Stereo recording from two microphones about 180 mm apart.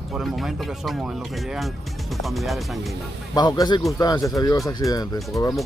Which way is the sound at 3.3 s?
25° left (ahead or behind).